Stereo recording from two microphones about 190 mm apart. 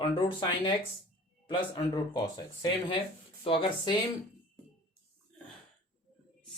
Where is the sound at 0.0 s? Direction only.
25° left (ahead or behind).